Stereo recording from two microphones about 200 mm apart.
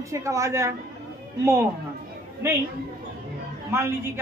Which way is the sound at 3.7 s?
10° right (ahead or behind).